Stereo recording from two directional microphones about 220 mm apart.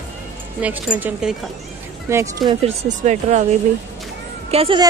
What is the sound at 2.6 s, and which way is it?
Speech, 30° right (ahead or behind).